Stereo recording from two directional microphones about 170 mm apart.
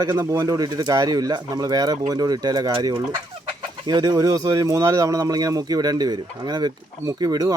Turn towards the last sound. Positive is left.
turn(degrees=-20)  # may be behind; listen again after turning